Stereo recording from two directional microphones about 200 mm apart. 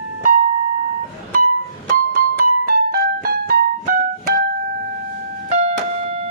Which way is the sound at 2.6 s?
45° right (ahead or behind).